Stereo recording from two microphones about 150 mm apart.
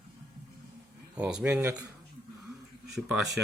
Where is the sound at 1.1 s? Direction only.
5° right (ahead or behind).